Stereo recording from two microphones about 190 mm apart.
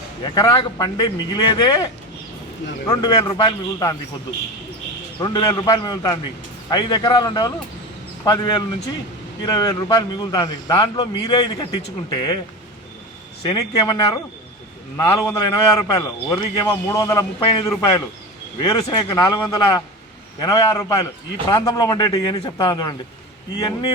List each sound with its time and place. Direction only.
0.2 s a man's voice: 20° left (ahead or behind)
5.2 s a man's voice: 20° left (ahead or behind)
13.4 s a man's voice: 25° left (ahead or behind)